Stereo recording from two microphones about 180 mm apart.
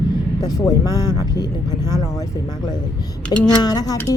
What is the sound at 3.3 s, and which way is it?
Speech, 25° left (ahead or behind).